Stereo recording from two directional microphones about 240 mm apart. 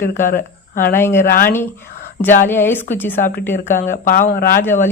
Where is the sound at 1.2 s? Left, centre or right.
Left.